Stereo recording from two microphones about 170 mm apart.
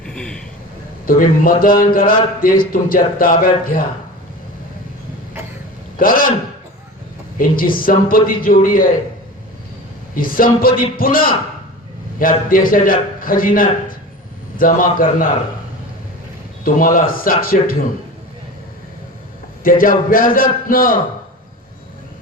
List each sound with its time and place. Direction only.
0.0 s a sound: 5° left (ahead or behind)
1.0 s a man's voice: 55° left (ahead or behind)
6.0 s a man's voice: 55° left (ahead or behind)
7.3 s a man's voice: 55° left (ahead or behind)
10.2 s a man's voice: 55° left (ahead or behind)
16.6 s a man's voice: 55° left (ahead or behind)
19.6 s a man's voice: 55° left (ahead or behind)